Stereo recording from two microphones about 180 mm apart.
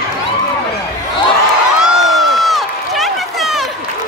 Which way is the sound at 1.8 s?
Centre (ahead or behind).